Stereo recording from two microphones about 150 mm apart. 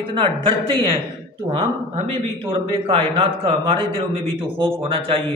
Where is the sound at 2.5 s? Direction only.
35° right (ahead or behind).